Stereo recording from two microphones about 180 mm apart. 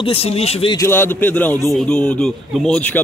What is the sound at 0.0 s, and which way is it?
Speech, 30° left (ahead or behind).